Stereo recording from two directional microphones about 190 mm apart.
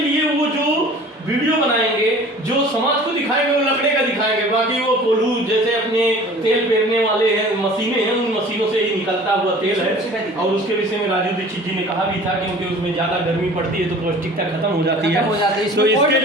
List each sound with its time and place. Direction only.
14.8 s a man's voice: 60° right (ahead or behind)